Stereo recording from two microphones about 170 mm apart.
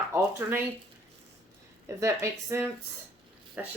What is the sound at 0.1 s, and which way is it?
Speech, 15° right (ahead or behind).